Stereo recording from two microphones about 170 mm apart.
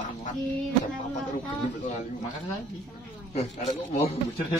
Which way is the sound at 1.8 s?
45° left (ahead or behind).